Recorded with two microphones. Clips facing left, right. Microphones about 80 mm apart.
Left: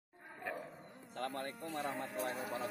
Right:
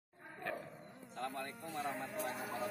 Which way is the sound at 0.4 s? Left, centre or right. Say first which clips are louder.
Even; centre.